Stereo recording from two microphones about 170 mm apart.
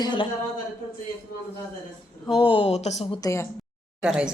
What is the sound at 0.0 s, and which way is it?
Speech, 25° left (ahead or behind).